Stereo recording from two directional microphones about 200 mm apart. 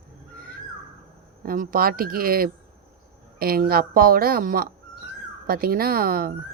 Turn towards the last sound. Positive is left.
turn(degrees=-45)  # may be behind; listen again after turning